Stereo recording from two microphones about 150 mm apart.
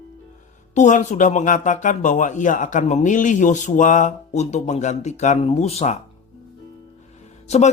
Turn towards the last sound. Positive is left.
turn(degrees=45)  # may be behind; listen again after turning